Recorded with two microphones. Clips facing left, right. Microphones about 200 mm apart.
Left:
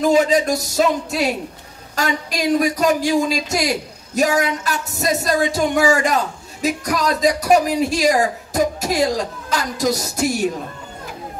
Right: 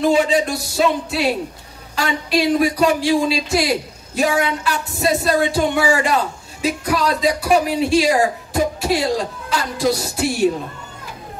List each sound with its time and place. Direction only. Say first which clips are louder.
0.0 s speech: left 1 dB; 45° left (ahead or behind)